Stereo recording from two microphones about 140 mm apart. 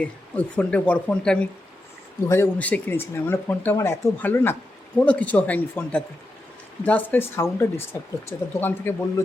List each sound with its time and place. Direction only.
0.0 s speech: 10° left (ahead or behind)
2.2 s speech: 20° left (ahead or behind)